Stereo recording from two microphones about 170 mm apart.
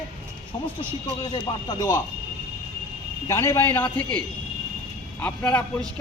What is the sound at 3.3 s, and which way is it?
Speech, 15° left (ahead or behind).